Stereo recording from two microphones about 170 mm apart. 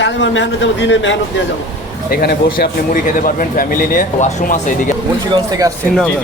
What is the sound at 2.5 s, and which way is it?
Speech, 55° left (ahead or behind).